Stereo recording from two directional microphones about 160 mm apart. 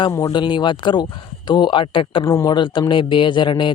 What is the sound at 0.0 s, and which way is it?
Speech, 25° left (ahead or behind).